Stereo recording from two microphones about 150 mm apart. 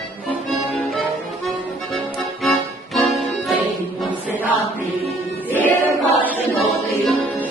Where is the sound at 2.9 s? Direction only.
Centre (ahead or behind).